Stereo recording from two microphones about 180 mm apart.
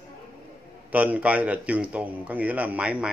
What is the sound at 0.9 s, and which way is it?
A man's voice, 10° right (ahead or behind).